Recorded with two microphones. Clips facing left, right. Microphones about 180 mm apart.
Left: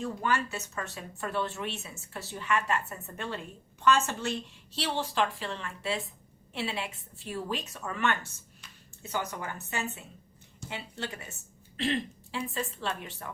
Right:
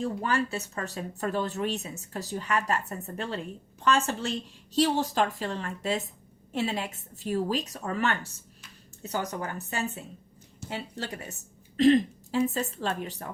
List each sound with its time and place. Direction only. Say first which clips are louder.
0.2 s speech: right 2 dB; 35° right (ahead or behind)